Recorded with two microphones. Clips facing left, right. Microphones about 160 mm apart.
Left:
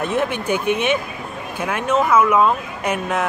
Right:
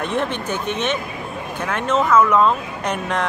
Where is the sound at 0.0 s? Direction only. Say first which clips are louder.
Left 2 dB; 5° left (ahead or behind).